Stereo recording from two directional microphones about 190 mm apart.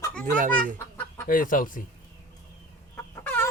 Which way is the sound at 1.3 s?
45° left (ahead or behind).